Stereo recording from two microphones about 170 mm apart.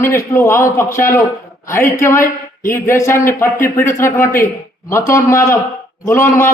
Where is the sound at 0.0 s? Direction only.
15° left (ahead or behind).